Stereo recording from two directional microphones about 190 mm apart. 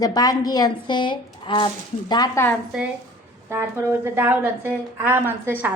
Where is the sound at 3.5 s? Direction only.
10° right (ahead or behind).